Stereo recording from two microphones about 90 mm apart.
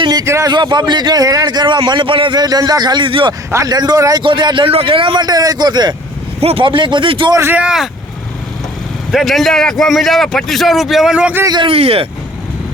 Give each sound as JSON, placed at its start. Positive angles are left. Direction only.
{"t": 0.0, "sound": "a sound", "side_deg": -50}
{"t": 0.4, "sound": "a man's voice", "side_deg": -60}
{"t": 2.3, "sound": "a man's voice", "side_deg": -50}
{"t": 3.5, "sound": "a man's voice", "side_deg": -40}
{"t": 4.2, "sound": "a man's voice", "side_deg": -65}
{"t": 5.2, "sound": "a man's voice", "side_deg": -45}
{"t": 6.5, "sound": "a man's voice", "side_deg": -70}
{"t": 7.5, "sound": "speech", "side_deg": -10}
{"t": 9.1, "sound": "a man's voice", "side_deg": 0}
{"t": 11.5, "sound": "speech", "side_deg": -80}